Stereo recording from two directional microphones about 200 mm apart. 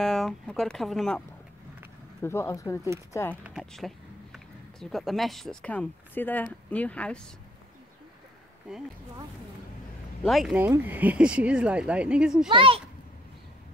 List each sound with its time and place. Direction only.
0.0 s speech: centre (ahead or behind)
2.2 s speech: 15° left (ahead or behind)
3.4 s speech: centre (ahead or behind)
8.7 s speech: 5° right (ahead or behind)
10.2 s speech: centre (ahead or behind)
12.4 s speech: 25° right (ahead or behind)